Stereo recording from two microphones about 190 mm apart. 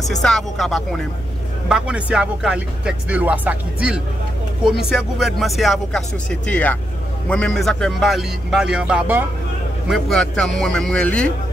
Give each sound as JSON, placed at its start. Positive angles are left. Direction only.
{"t": 0.1, "sound": "speech", "side_deg": 0}